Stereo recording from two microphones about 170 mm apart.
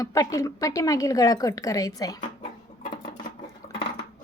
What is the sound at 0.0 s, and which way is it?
A woman's voice, 20° left (ahead or behind).